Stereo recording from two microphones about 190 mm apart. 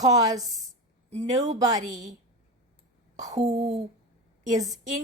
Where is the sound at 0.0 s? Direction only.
20° right (ahead or behind).